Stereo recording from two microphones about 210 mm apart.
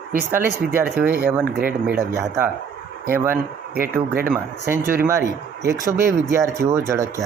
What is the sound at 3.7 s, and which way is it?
Speech, 45° right (ahead or behind).